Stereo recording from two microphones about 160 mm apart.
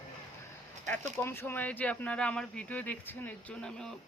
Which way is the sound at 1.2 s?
15° left (ahead or behind).